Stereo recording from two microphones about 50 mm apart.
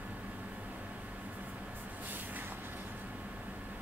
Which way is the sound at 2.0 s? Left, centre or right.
Right.